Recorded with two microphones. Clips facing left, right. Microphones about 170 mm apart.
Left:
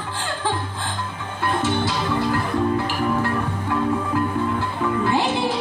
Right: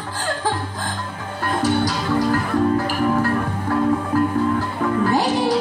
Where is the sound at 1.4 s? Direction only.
40° right (ahead or behind).